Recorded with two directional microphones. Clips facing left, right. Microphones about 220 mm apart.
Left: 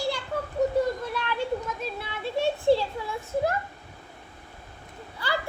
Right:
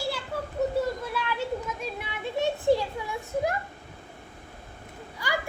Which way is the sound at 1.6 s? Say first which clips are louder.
Left 1 dB; 15° right (ahead or behind).